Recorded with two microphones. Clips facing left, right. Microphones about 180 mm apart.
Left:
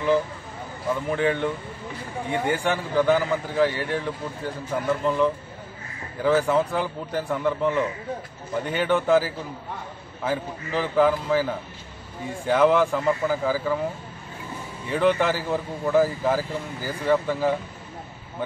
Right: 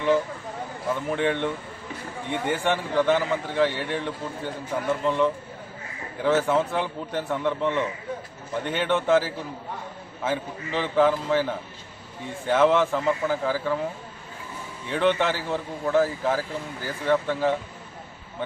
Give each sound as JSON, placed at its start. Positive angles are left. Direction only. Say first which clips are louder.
{"t": 0.9, "sound": "a man's voice", "louder": "left 1 dB", "side_deg": 0}
{"t": 14.9, "sound": "a man's voice", "louder": "left 2 dB", "side_deg": 5}